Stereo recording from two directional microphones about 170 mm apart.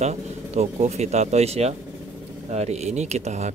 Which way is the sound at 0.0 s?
40° right (ahead or behind).